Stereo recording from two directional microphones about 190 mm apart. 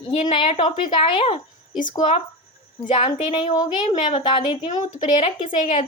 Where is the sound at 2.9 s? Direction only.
35° left (ahead or behind).